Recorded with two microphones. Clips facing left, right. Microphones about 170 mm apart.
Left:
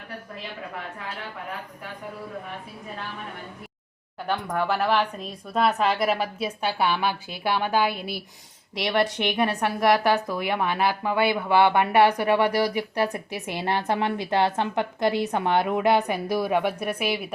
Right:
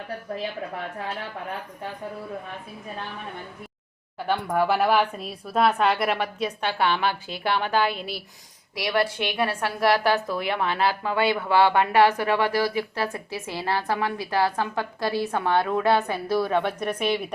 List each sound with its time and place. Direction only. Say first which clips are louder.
4.3 s speech: right 3 dB; 5° right (ahead or behind); by 8.2 s 15° left (ahead or behind)
8.7 s a woman's voice: left 1 dB; 25° left (ahead or behind); by 17.2 s 10° left (ahead or behind)